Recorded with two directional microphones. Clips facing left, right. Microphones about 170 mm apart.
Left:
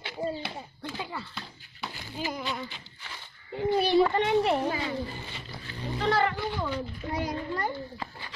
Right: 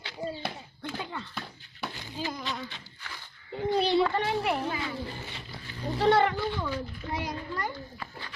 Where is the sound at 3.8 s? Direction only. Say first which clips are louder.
Left 2 dB; 15° left (ahead or behind).